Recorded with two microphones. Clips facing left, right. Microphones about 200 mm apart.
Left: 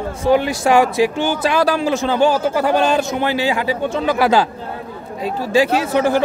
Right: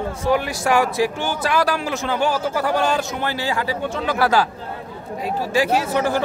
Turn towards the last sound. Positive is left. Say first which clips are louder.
# left 4 dB
turn(degrees=20)  # may be behind; listen again after turning